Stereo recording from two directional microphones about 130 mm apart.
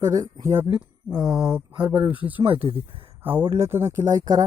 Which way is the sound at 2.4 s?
45° right (ahead or behind).